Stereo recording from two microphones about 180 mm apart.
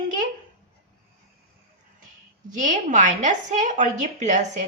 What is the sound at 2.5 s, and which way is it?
A woman's voice, 45° right (ahead or behind).